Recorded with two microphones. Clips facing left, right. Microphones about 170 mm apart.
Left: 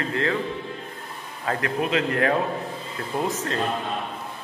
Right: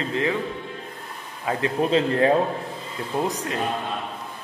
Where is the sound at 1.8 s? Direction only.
30° right (ahead or behind).